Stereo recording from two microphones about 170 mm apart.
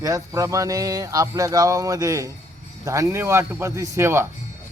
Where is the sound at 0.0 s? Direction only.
20° right (ahead or behind).